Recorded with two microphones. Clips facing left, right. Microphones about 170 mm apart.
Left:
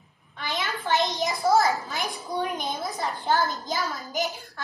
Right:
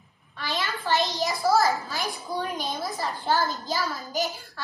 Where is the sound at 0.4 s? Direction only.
20° left (ahead or behind).